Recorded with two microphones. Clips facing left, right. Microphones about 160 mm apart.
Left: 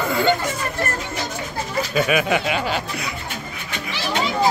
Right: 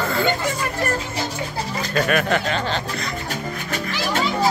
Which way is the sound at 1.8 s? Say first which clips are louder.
Left 1 dB; 5° left (ahead or behind).